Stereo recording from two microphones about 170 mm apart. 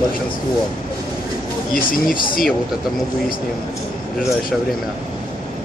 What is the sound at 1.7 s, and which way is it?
Speech, 55° left (ahead or behind).